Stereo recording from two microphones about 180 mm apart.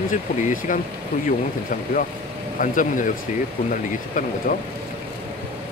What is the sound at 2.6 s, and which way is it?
Speech, 45° left (ahead or behind).